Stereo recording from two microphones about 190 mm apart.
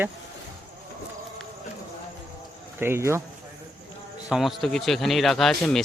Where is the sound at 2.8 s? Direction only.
15° right (ahead or behind).